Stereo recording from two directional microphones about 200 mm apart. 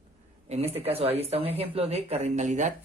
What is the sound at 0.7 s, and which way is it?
Speech, 30° right (ahead or behind).